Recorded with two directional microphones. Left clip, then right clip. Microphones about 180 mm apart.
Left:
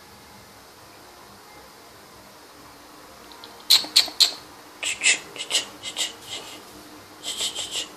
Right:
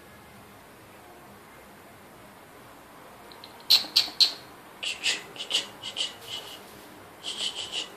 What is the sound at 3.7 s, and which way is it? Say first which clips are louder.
Rodents: left 3 dB; 20° left (ahead or behind).